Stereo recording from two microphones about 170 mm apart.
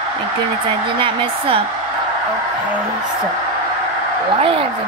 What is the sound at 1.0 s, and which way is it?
Speech, 30° right (ahead or behind).